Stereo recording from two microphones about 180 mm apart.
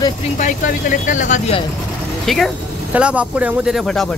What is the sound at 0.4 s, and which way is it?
Speech, 45° left (ahead or behind).